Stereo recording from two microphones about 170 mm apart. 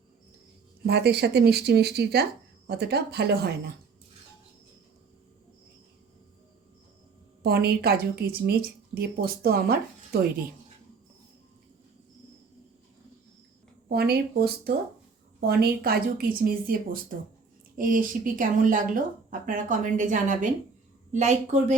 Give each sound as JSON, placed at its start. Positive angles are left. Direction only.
{"t": 0.9, "sound": "speech", "side_deg": -75}
{"t": 7.4, "sound": "a woman's voice", "side_deg": -70}
{"t": 13.8, "sound": "a woman's voice", "side_deg": -70}